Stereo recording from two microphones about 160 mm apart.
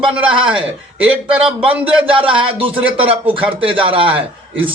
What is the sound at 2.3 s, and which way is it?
Speech, 35° right (ahead or behind).